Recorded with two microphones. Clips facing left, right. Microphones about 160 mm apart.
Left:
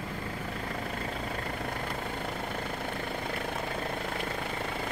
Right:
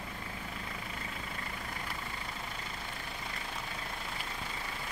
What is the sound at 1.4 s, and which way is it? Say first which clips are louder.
Vehicle: left 8 dB; 55° left (ahead or behind).